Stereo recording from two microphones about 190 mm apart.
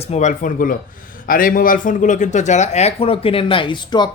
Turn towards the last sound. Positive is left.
turn(degrees=25)  # may be behind; listen again after turning